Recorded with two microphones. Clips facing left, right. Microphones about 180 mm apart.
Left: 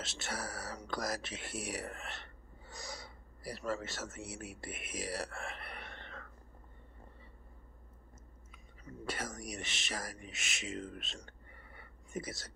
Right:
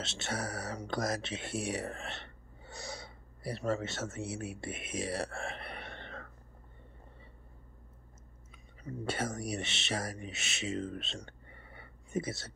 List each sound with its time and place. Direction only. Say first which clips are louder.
0.0 s speech: right 4 dB; 25° right (ahead or behind)
9.0 s speech: right 6 dB; 30° right (ahead or behind)